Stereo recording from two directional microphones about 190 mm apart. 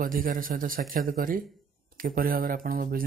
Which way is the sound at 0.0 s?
50° right (ahead or behind).